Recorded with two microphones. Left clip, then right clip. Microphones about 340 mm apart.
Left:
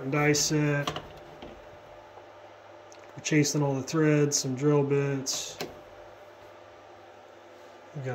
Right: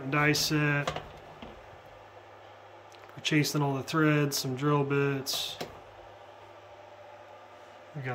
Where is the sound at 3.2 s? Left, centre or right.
Centre.